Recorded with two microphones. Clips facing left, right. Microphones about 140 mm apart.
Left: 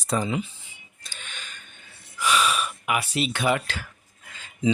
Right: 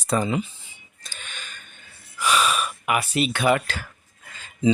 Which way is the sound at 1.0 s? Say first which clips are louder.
Right 1 dB; 45° right (ahead or behind).